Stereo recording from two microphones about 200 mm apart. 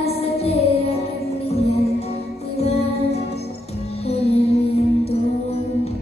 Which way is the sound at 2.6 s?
30° left (ahead or behind).